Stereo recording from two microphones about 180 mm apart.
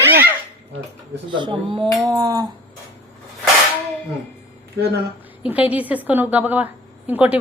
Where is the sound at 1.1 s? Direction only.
25° right (ahead or behind).